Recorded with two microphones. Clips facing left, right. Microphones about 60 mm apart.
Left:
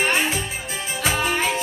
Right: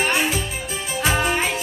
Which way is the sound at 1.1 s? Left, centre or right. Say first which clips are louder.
Right 2 dB; right.